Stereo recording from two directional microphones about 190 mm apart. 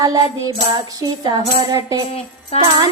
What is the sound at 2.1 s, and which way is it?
Music, 30° left (ahead or behind).